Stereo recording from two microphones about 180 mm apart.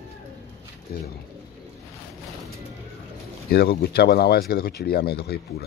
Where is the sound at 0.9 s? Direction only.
55° left (ahead or behind).